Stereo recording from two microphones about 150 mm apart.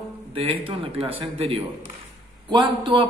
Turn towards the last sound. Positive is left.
turn(degrees=-30)  # may be behind; listen again after turning